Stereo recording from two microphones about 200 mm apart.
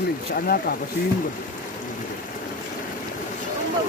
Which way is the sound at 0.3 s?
50° left (ahead or behind).